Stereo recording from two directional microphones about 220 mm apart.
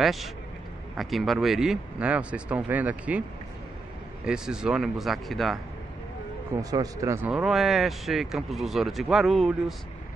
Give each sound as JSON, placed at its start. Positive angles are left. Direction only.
{"t": 0.0, "sound": "speech", "side_deg": 0}
{"t": 6.6, "sound": "speech", "side_deg": -15}